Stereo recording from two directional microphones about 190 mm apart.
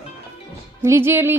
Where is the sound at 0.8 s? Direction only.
15° right (ahead or behind).